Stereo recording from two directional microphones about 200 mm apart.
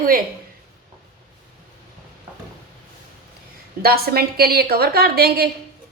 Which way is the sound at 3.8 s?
50° right (ahead or behind).